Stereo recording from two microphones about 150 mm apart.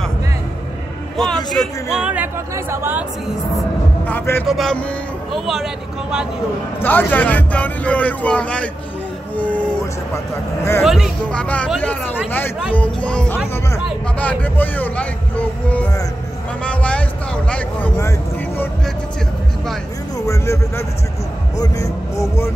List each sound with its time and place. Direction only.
1.1 s speech: 5° left (ahead or behind); by 3.1 s 15° right (ahead or behind)
4.0 s a man's voice: 10° left (ahead or behind)
6.8 s a man's voice: 10° left (ahead or behind)
10.8 s speech: centre (ahead or behind)
11.2 s a man's voice: 10° left (ahead or behind)
20.2 s speech: 20° left (ahead or behind)